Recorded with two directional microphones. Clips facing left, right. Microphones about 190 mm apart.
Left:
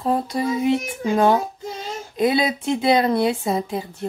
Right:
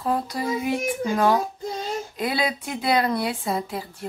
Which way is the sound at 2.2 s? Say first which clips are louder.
Left 8 dB; 20° left (ahead or behind).